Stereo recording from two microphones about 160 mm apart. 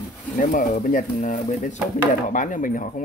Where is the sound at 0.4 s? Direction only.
55° left (ahead or behind).